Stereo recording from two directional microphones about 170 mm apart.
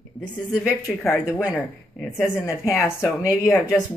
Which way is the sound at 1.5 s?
10° left (ahead or behind).